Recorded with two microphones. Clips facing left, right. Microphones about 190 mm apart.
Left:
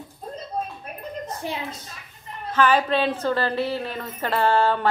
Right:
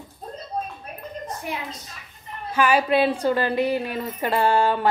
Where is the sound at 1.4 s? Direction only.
30° left (ahead or behind).